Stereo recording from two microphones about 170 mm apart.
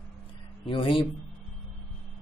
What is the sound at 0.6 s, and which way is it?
Speech, 30° left (ahead or behind).